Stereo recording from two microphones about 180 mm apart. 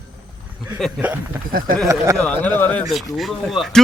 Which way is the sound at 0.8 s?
10° right (ahead or behind).